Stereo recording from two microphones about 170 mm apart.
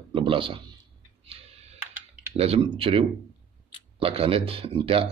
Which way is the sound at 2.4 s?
35° right (ahead or behind).